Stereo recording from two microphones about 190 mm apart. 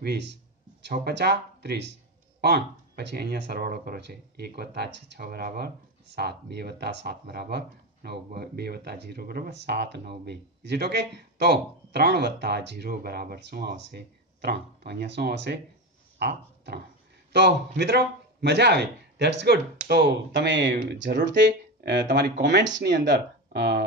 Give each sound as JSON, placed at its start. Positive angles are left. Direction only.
{"t": 0.0, "sound": "speech", "side_deg": -60}